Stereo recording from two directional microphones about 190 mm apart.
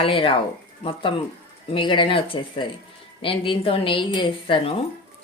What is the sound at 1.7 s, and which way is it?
Speech, 25° left (ahead or behind).